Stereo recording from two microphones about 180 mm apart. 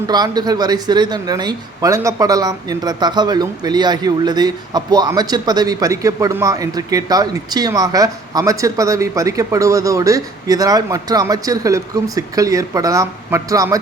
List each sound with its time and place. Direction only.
0.1 s speech: 20° right (ahead or behind)